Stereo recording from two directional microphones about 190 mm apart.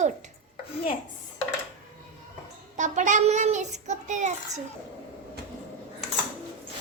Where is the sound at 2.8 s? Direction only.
40° right (ahead or behind).